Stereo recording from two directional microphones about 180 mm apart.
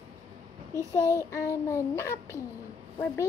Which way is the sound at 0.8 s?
15° right (ahead or behind).